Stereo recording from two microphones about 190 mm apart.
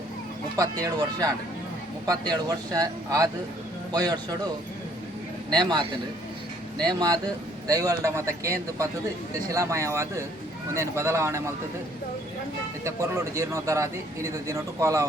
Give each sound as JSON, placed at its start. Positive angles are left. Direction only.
{"t": 0.5, "sound": "speech", "side_deg": -20}
{"t": 5.5, "sound": "speech", "side_deg": -20}
{"t": 6.8, "sound": "a man's voice", "side_deg": -20}
{"t": 12.8, "sound": "a man's voice", "side_deg": -15}